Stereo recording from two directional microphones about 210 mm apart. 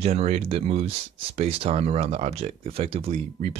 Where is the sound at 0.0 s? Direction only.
30° right (ahead or behind).